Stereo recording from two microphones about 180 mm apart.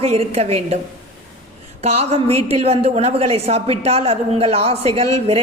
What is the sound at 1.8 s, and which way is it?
A woman's voice, 35° right (ahead or behind).